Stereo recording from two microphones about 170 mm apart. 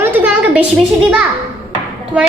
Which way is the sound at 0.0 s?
10° right (ahead or behind).